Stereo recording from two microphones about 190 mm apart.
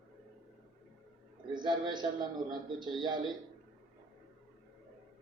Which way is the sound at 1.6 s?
25° right (ahead or behind).